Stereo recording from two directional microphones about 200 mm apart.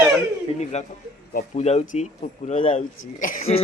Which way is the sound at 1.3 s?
45° left (ahead or behind).